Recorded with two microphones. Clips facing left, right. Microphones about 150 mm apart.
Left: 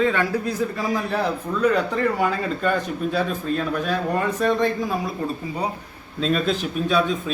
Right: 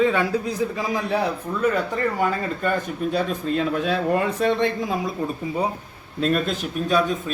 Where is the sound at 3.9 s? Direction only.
30° right (ahead or behind).